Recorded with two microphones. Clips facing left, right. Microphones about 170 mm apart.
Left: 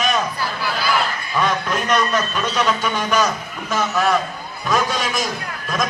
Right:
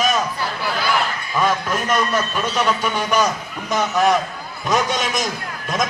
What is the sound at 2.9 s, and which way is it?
Speech, 10° right (ahead or behind).